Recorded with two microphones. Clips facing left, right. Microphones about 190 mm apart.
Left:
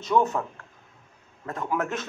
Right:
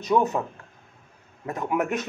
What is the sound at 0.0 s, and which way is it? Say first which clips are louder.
A man's voice: right 1 dB; 15° right (ahead or behind).